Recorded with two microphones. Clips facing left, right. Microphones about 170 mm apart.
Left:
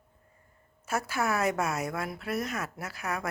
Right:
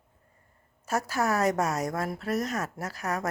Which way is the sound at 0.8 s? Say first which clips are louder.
Right 2 dB; 40° right (ahead or behind).